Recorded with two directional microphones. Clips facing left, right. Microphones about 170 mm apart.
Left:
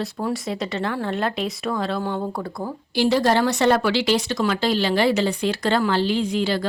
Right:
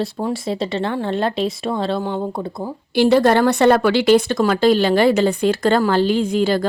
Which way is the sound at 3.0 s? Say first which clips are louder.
Right 5 dB; 60° right (ahead or behind).